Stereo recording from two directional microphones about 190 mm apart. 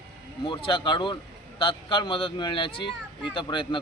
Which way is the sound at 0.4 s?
25° left (ahead or behind).